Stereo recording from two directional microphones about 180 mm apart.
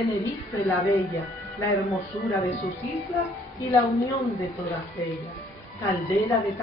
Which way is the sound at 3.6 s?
15° left (ahead or behind).